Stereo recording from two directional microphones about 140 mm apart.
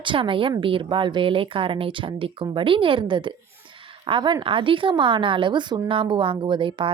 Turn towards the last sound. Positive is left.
turn(degrees=-35)  # may be behind; listen again after turning